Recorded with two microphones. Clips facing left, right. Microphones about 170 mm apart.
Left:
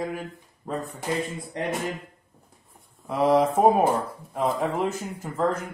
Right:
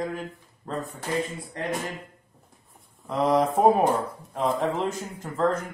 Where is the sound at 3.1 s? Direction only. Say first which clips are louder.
Left 2 dB; 5° left (ahead or behind).